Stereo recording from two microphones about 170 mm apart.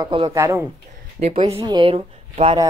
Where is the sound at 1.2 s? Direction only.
35° right (ahead or behind).